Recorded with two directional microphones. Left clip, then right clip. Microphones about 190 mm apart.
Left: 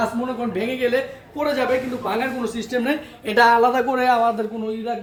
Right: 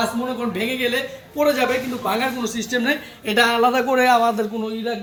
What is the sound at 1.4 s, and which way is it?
Speech, 30° right (ahead or behind).